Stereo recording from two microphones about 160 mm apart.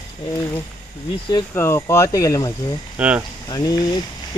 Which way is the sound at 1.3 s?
15° left (ahead or behind).